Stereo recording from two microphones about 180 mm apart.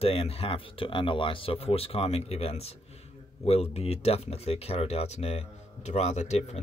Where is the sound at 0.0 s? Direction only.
35° left (ahead or behind).